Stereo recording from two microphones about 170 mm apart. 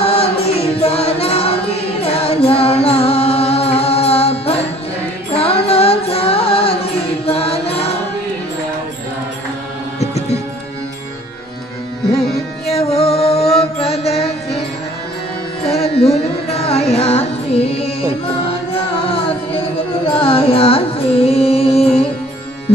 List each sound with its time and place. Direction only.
0.0 s music: 35° left (ahead or behind)
12.7 s music: 35° left (ahead or behind)
15.6 s carnatic music: 35° left (ahead or behind)
20.1 s carnatic music: 35° left (ahead or behind)